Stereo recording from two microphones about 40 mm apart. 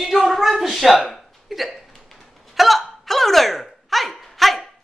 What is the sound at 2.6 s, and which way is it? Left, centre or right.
Hiccup, centre.